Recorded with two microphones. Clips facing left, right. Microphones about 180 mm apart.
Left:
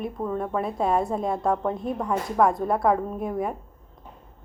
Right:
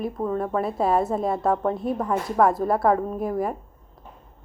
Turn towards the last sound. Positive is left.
turn(degrees=0)  # may be behind; listen again after turning